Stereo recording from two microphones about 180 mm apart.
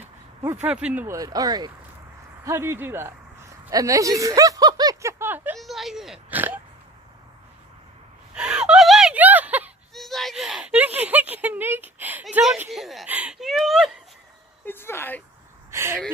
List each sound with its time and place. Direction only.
0.6 s speech: 5° right (ahead or behind)
8.4 s whimper: 5° right (ahead or behind)
14.6 s speech: 10° left (ahead or behind)
15.7 s speech: 15° right (ahead or behind)